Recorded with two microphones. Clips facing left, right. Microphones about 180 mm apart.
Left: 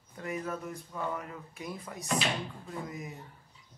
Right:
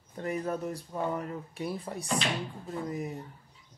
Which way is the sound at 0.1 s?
35° right (ahead or behind).